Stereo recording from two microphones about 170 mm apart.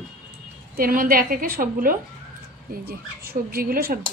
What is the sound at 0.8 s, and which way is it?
Speech, 55° right (ahead or behind).